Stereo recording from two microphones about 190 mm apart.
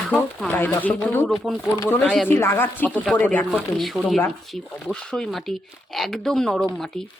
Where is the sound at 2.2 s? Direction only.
15° left (ahead or behind).